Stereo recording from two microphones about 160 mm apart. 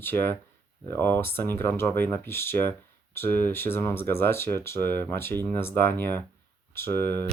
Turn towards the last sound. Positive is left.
turn(degrees=15)  # may be behind; listen again after turning